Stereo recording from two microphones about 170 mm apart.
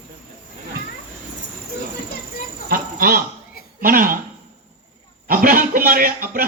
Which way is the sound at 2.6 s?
60° right (ahead or behind).